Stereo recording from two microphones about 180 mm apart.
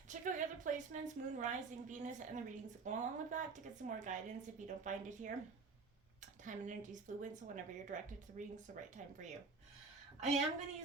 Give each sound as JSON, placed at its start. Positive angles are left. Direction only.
{"t": 0.1, "sound": "a woman's voice", "side_deg": -45}
{"t": 6.4, "sound": "a woman's voice", "side_deg": -45}
{"t": 10.2, "sound": "a woman's voice", "side_deg": -35}